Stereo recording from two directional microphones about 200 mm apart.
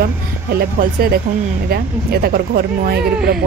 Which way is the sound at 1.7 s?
50° right (ahead or behind).